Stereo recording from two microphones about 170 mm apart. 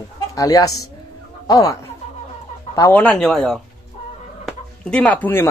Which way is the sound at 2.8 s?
10° left (ahead or behind).